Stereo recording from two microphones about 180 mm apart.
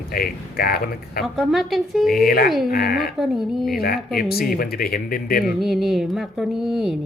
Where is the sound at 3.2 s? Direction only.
Centre (ahead or behind).